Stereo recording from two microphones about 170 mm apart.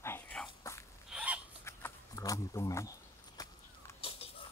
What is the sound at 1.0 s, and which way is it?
Fowl, 5° right (ahead or behind).